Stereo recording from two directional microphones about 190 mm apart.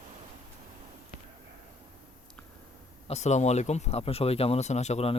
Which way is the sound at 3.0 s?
35° left (ahead or behind).